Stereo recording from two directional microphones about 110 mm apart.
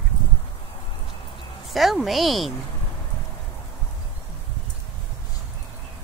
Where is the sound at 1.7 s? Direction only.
Centre (ahead or behind).